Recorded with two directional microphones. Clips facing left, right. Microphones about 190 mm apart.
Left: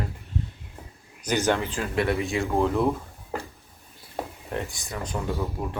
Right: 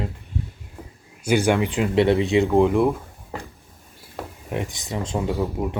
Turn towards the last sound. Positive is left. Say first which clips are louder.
# right 5 dB
turn(degrees=-20)  # may be behind; listen again after turning